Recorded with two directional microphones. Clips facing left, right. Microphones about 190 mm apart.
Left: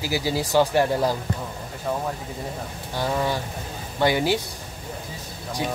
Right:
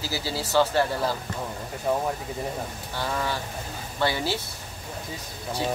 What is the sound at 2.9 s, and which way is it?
Speech, 15° left (ahead or behind).